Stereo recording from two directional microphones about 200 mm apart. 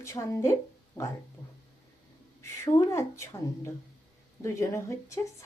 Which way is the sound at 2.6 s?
15° left (ahead or behind).